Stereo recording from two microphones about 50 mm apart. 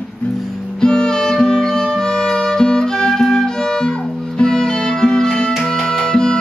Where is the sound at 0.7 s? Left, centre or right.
Centre.